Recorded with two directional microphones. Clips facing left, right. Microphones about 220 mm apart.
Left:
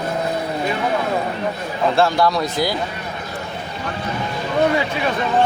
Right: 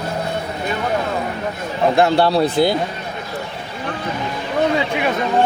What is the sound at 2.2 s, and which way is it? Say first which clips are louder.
Speech: right 4 dB; 30° right (ahead or behind).